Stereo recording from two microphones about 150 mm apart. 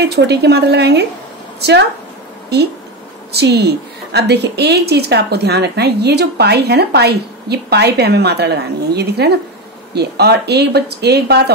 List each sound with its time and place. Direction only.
0.0 s a woman's voice: 90° right
3.3 s a woman's voice: 90° right